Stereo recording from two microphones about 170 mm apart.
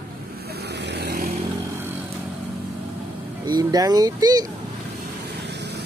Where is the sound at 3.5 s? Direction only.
25° right (ahead or behind).